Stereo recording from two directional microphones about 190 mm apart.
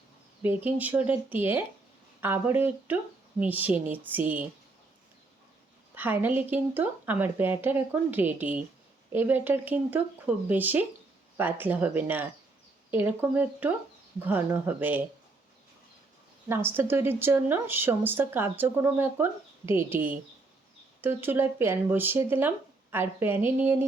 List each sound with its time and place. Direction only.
0.4 s a woman's voice: 10° right (ahead or behind)
5.9 s a woman's voice: 10° right (ahead or behind)
16.5 s a woman's voice: 10° right (ahead or behind)
21.0 s a woman's voice: 10° right (ahead or behind)